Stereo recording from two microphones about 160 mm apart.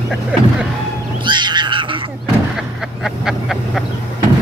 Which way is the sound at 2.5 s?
Centre (ahead or behind).